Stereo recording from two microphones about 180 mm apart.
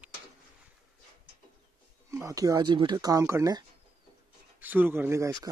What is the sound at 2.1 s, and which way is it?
Speech, 15° right (ahead or behind).